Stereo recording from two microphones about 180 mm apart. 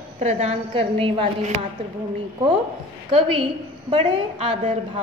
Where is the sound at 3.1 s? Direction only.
30° right (ahead or behind).